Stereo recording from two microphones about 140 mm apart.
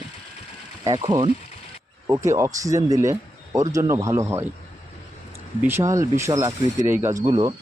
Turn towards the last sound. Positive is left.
turn(degrees=-35)  # may be behind; listen again after turning